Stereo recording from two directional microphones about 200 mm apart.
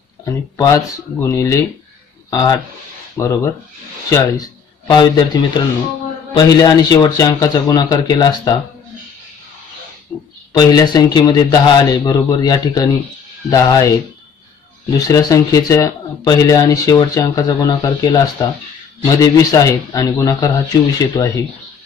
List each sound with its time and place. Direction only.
0.2 s a man's voice: 15° left (ahead or behind)
10.1 s a man's voice: 10° left (ahead or behind)